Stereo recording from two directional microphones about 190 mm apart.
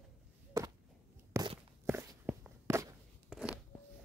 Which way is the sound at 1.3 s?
15° right (ahead or behind).